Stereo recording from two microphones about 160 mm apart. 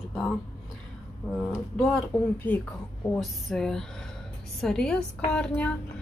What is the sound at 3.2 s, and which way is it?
A woman's voice, centre (ahead or behind).